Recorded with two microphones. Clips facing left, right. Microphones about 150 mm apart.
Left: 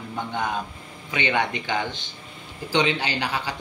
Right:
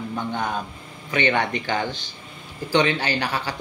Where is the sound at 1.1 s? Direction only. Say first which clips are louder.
Right 3 dB; 15° left (ahead or behind).